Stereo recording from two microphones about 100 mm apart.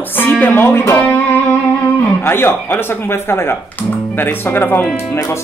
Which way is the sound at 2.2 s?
25° left (ahead or behind).